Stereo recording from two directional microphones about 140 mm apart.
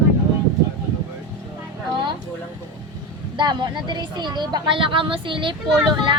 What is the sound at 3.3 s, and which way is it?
Speech, 30° right (ahead or behind).